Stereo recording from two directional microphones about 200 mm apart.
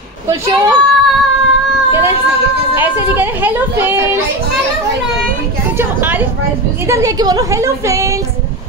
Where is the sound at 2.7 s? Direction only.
10° right (ahead or behind).